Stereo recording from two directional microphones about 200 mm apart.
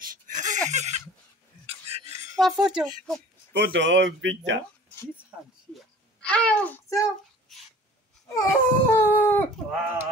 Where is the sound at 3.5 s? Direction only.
60° right (ahead or behind).